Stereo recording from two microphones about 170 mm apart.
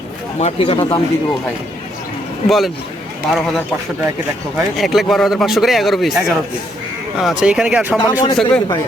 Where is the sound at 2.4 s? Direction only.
Centre (ahead or behind).